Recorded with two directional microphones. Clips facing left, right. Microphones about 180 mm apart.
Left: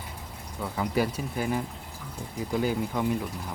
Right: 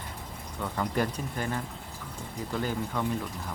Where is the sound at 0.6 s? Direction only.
5° left (ahead or behind).